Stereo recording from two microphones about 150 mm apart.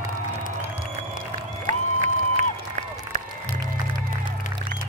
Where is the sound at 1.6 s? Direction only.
55° right (ahead or behind).